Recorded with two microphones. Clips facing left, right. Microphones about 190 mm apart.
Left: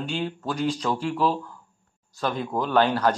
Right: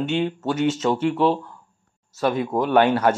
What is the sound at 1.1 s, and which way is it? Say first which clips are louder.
Speech: right 4 dB; 30° right (ahead or behind).